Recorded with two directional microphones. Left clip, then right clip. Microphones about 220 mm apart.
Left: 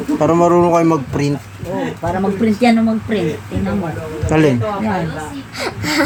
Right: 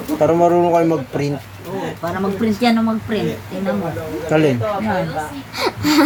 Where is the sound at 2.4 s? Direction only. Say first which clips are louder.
Left 3 dB; 5° right (ahead or behind).